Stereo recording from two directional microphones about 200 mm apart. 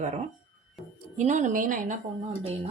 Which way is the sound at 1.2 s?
35° right (ahead or behind).